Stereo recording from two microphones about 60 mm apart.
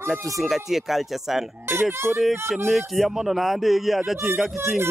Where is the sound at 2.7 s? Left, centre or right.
Centre.